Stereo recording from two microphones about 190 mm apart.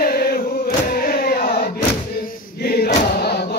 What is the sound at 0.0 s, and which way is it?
Chant, 55° left (ahead or behind).